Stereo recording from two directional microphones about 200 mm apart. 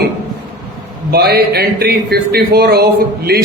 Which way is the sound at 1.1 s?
55° right (ahead or behind).